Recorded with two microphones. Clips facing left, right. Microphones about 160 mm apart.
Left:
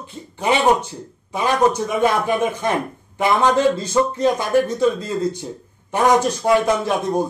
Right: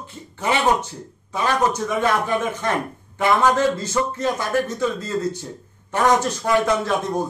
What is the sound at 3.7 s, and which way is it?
Speech, 15° left (ahead or behind).